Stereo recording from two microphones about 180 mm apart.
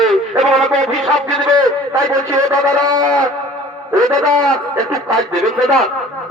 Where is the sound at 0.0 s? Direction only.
Centre (ahead or behind).